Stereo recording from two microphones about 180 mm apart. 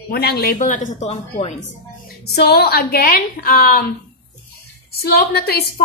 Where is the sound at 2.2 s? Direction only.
65° left (ahead or behind).